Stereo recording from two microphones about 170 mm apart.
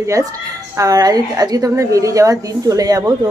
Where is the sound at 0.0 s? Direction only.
20° right (ahead or behind).